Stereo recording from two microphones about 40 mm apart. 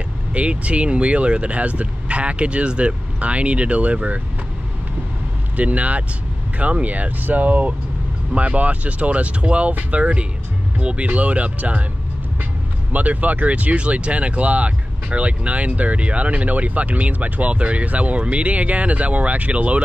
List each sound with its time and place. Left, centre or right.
0.3 s speech: right
5.6 s speech: right
12.9 s speech: right